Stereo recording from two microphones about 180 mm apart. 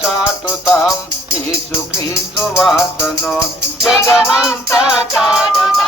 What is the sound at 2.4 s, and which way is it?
Music, centre (ahead or behind).